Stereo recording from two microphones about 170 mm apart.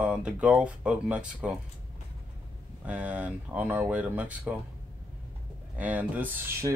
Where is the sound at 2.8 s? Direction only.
5° right (ahead or behind).